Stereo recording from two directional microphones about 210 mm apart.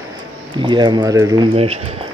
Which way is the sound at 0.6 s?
20° right (ahead or behind).